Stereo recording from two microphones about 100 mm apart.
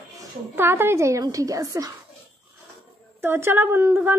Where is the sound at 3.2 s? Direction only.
20° right (ahead or behind).